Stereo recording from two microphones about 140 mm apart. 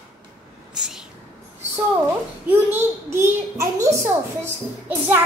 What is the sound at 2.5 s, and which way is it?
A child's voice, 15° right (ahead or behind).